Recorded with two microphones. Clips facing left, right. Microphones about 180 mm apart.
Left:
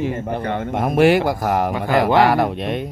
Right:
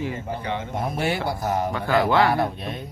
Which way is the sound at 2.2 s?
90° left.